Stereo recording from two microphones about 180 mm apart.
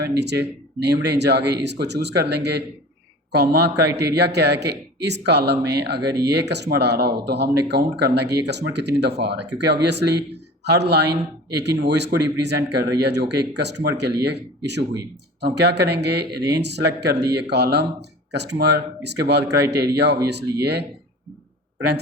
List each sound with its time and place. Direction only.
0.1 s a man's voice: 70° right (ahead or behind)